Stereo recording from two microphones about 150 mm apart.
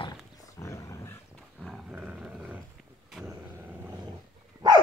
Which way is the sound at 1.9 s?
10° right (ahead or behind).